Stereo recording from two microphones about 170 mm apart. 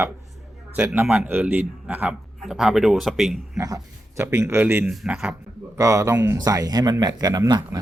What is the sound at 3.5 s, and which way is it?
A man's voice, 20° right (ahead or behind).